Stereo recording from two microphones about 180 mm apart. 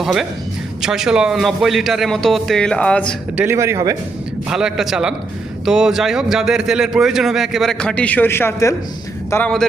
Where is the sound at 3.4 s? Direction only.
15° right (ahead or behind).